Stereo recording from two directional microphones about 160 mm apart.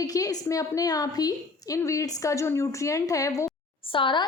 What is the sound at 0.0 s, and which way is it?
A woman's voice, 20° left (ahead or behind).